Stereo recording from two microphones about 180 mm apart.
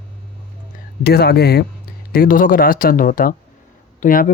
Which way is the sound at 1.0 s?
65° left (ahead or behind).